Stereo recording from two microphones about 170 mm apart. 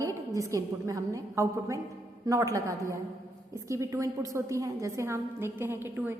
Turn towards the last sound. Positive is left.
turn(degrees=-15)  # may be behind; listen again after turning